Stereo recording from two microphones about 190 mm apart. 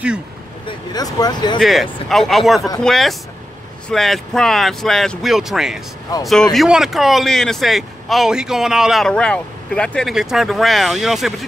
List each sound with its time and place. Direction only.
0.7 s speech: 20° left (ahead or behind)
1.6 s speech: centre (ahead or behind)